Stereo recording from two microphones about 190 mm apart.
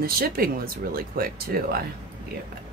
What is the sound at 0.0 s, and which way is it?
Speech, 50° right (ahead or behind).